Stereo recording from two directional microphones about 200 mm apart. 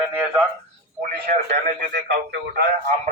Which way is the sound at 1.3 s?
40° right (ahead or behind).